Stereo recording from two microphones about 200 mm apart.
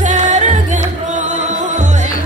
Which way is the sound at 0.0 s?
35° right (ahead or behind).